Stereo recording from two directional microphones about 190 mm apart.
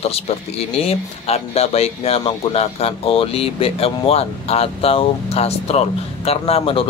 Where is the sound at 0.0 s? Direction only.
30° left (ahead or behind).